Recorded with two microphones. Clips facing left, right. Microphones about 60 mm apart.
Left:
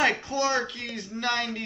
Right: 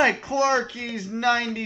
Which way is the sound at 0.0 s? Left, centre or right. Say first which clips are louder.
Right 4 dB; right.